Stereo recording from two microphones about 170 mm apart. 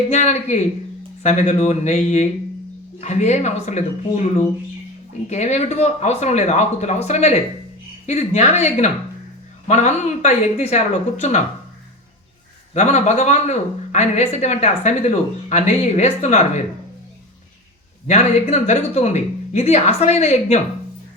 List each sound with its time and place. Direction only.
0.1 s speech: 40° left (ahead or behind)
12.7 s speech: 40° left (ahead or behind)
18.1 s speech: 40° left (ahead or behind)